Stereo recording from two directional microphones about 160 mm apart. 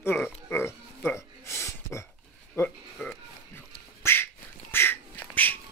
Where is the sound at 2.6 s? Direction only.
5° left (ahead or behind).